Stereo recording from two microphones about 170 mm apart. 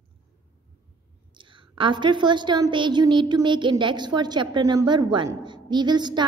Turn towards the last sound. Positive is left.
turn(degrees=-25)  # may be behind; listen again after turning